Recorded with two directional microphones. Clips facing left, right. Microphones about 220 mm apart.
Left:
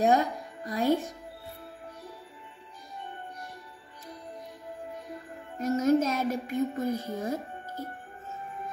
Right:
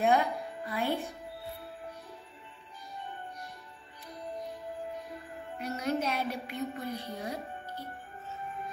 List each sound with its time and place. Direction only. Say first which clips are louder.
0.0 s speech: left 3 dB; 40° left (ahead or behind)
5.6 s speech: left 9 dB; 45° left (ahead or behind)